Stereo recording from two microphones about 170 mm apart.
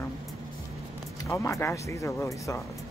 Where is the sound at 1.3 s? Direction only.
15° left (ahead or behind).